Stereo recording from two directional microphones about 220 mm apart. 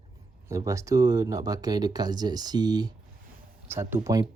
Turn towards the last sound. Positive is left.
turn(degrees=-15)  # may be behind; listen again after turning